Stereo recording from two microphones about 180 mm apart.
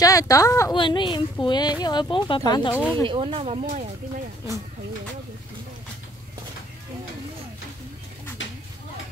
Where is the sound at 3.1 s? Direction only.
30° right (ahead or behind).